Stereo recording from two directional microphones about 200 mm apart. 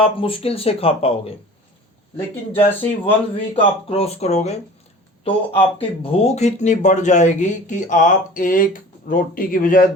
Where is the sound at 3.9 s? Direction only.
30° left (ahead or behind).